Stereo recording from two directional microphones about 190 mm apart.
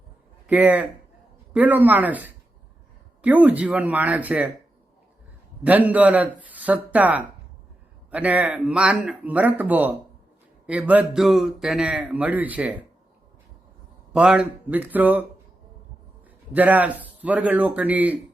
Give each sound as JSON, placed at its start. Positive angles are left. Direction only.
{"t": 0.4, "sound": "speech", "side_deg": -10}
{"t": 5.6, "sound": "speech", "side_deg": -10}
{"t": 14.1, "sound": "speech", "side_deg": -5}
{"t": 16.5, "sound": "speech", "side_deg": -10}